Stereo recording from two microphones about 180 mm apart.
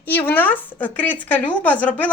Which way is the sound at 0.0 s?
10° left (ahead or behind).